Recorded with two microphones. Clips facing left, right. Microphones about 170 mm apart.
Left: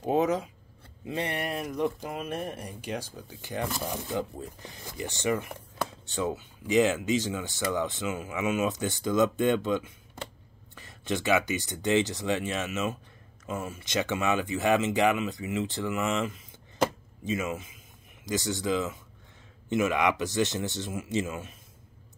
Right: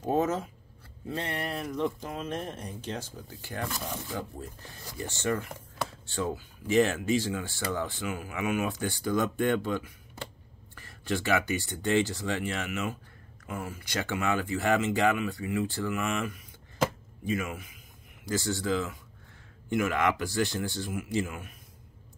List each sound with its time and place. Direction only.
0.0 s speech: 15° left (ahead or behind)